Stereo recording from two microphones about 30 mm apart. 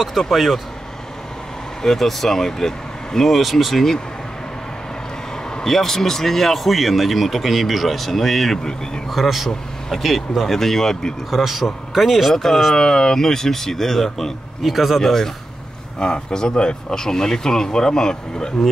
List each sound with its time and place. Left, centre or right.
0.3 s speech: centre
1.8 s speech: centre
3.3 s speech: centre
5.6 s speech: centre
9.1 s speech: centre
10.5 s speech: centre
11.2 s speech: centre
12.7 s speech: centre
14.6 s speech: centre
15.0 s speech: centre
16.0 s speech: left